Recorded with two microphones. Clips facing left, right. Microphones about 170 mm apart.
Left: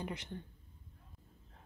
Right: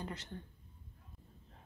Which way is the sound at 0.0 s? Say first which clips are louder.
Left 2 dB; 15° left (ahead or behind).